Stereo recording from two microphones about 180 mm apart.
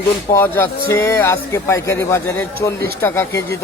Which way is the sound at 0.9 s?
15° left (ahead or behind).